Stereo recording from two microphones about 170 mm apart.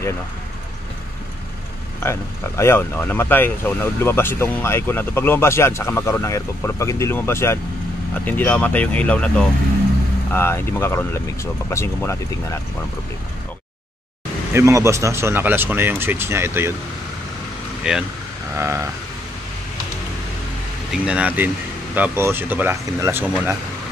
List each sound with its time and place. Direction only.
2.0 s speech: 15° left (ahead or behind)
10.3 s speech: 15° left (ahead or behind)
14.5 s speech: 15° right (ahead or behind)
17.8 s speech: 5° right (ahead or behind)
20.9 s speech: 5° right (ahead or behind)